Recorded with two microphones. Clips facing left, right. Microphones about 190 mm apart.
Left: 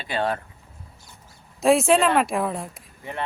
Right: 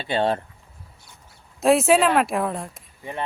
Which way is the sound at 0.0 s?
30° right (ahead or behind).